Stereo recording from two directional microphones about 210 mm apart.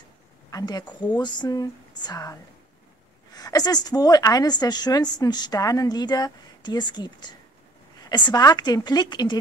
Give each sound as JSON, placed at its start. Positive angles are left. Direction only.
{"t": 0.5, "sound": "a woman's voice", "side_deg": 15}
{"t": 3.3, "sound": "a woman's voice", "side_deg": 15}